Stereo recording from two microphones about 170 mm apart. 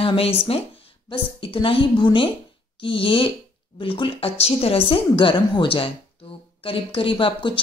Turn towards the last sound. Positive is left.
turn(degrees=30)  # may be behind; listen again after turning